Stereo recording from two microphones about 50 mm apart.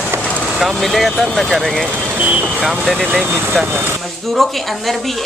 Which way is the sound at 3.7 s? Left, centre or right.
Right.